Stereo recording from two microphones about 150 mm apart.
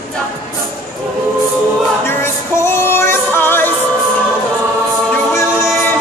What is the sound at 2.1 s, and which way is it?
Music, 15° left (ahead or behind).